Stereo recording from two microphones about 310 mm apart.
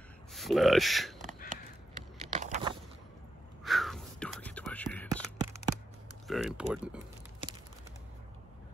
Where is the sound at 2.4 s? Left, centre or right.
Centre.